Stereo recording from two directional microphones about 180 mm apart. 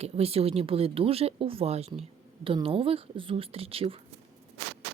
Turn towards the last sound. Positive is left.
turn(degrees=-30)  # may be behind; listen again after turning